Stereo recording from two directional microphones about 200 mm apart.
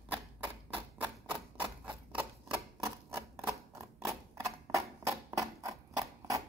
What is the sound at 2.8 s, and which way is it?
Typewriter, 10° right (ahead or behind).